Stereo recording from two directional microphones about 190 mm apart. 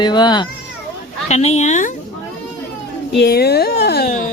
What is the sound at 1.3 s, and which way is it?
Speech, 35° left (ahead or behind).